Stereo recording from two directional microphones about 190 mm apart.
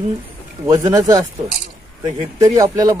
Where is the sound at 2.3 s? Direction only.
20° right (ahead or behind).